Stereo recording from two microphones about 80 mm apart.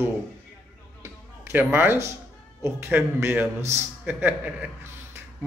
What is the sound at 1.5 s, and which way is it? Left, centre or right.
A man's voice, right.